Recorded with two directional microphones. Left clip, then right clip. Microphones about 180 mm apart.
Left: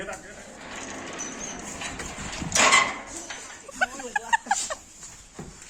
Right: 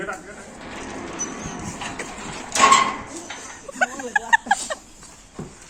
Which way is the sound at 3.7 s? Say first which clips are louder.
Right 5 dB; centre (ahead or behind).